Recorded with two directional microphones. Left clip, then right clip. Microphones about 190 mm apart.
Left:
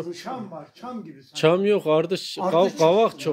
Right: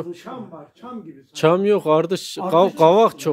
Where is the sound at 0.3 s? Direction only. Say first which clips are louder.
Left 2 dB; 45° left (ahead or behind).